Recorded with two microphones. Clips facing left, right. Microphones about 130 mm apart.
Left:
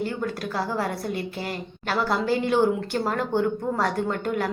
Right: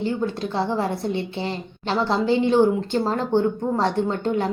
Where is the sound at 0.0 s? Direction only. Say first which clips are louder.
Right 4 dB; 25° right (ahead or behind).